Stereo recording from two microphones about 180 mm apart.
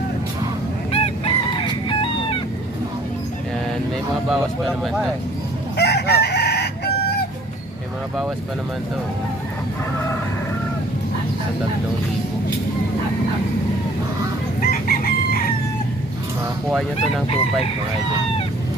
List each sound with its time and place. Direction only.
0.9 s chicken: 30° left (ahead or behind)
4.3 s speech: centre (ahead or behind)
5.7 s chicken: 65° left (ahead or behind)
14.7 s chicken: 55° left (ahead or behind)